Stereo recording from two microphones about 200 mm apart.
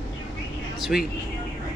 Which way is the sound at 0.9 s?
Centre (ahead or behind).